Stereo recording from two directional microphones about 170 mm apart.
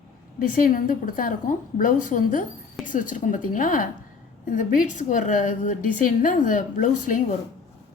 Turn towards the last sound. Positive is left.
turn(degrees=50)  # may be behind; listen again after turning